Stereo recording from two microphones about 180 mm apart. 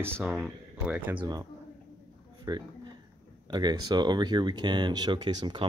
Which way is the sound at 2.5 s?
20° right (ahead or behind).